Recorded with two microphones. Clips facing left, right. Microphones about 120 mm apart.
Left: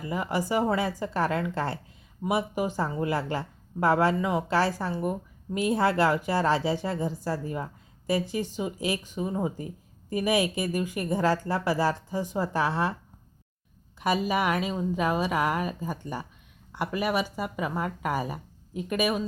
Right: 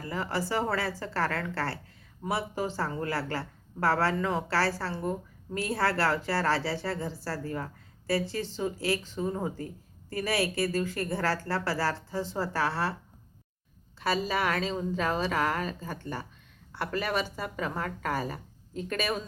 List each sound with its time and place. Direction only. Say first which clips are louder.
0.0 s a woman's voice: left 3 dB; 15° left (ahead or behind)
14.0 s a woman's voice: left 3 dB; 15° left (ahead or behind)